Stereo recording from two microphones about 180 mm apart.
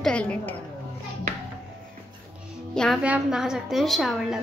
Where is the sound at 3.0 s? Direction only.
5° right (ahead or behind).